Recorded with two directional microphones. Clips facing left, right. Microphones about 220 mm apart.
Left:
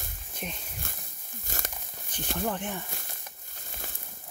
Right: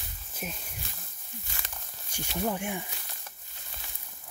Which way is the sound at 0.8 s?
55° left (ahead or behind).